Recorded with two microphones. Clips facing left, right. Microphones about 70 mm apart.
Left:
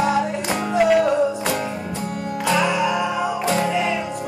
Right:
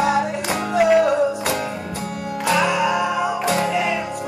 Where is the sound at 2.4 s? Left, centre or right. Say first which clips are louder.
Right 1 dB; centre.